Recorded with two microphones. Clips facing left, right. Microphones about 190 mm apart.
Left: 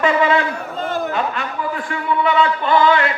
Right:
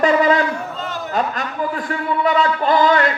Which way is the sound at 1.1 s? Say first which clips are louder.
Right 1 dB; 40° right (ahead or behind).